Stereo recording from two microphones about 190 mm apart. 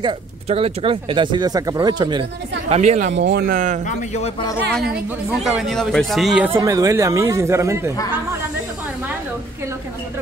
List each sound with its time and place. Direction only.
0.0 s speech: 30° right (ahead or behind)
2.7 s speech: 35° right (ahead or behind)
3.1 s speech: 65° right (ahead or behind); by 3.8 s 45° right (ahead or behind)
3.8 s speech: 35° left (ahead or behind)
5.4 s a man's voice: centre (ahead or behind)
6.5 s speech: 20° right (ahead or behind)